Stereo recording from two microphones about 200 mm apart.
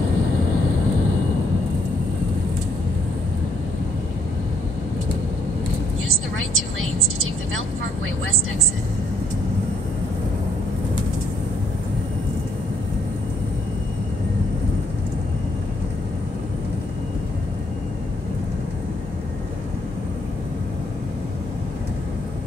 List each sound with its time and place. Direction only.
6.0 s vehicle: 90° right